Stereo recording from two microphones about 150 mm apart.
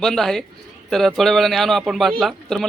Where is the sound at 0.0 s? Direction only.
5° left (ahead or behind).